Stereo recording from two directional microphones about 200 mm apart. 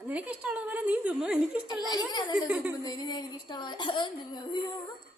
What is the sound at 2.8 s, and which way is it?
A woman's voice, 20° left (ahead or behind).